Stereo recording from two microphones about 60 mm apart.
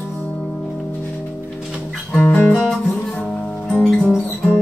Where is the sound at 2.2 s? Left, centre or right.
Left.